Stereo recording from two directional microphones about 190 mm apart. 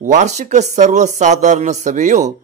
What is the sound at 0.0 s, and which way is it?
Speech, 40° right (ahead or behind).